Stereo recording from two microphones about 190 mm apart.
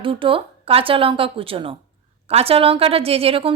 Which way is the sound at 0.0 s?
25° right (ahead or behind).